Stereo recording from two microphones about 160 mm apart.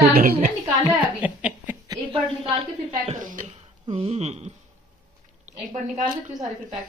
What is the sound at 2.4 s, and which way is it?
A woman's voice, 40° right (ahead or behind).